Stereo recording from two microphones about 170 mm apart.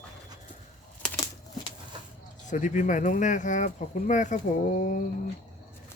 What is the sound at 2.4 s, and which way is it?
Speech, 45° left (ahead or behind).